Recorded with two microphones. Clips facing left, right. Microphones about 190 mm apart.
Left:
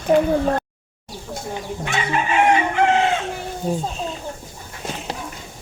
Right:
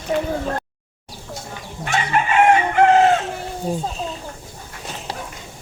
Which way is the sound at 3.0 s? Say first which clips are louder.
Right 5 dB; 40° right (ahead or behind).